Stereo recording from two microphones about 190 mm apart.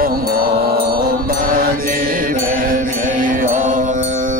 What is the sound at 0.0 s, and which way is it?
Mantra, 50° right (ahead or behind).